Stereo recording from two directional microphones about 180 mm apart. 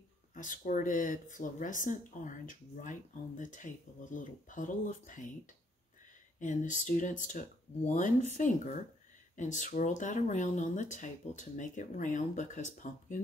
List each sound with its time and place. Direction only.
0.3 s speech: 45° left (ahead or behind)
6.4 s speech: 45° left (ahead or behind)